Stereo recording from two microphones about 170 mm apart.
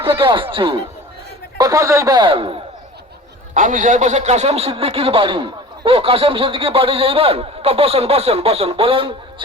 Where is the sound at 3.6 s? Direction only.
50° right (ahead or behind).